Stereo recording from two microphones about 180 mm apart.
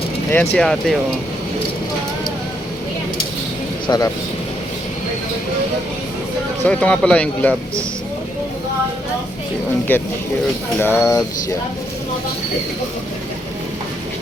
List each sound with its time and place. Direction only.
0.3 s speech: 10° left (ahead or behind)
3.8 s speech: 20° left (ahead or behind)
6.7 s speech: 5° left (ahead or behind)
9.9 s speech: 10° left (ahead or behind)